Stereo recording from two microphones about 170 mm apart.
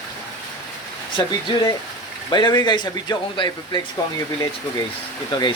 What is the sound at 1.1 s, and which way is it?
Speech, 30° left (ahead or behind).